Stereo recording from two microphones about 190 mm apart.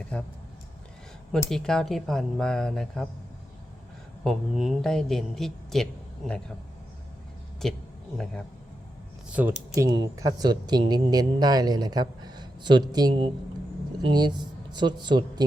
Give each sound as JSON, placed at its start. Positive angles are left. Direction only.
{"t": 0.1, "sound": "speech", "side_deg": 5}
{"t": 1.5, "sound": "speech", "side_deg": 5}
{"t": 4.2, "sound": "speech", "side_deg": 0}
{"t": 7.6, "sound": "speech", "side_deg": 0}
{"t": 9.3, "sound": "speech", "side_deg": -10}